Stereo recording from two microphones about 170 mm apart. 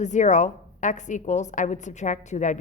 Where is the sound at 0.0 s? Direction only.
45° left (ahead or behind).